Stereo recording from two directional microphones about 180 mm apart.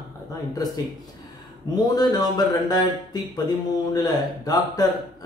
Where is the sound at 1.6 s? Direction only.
20° left (ahead or behind).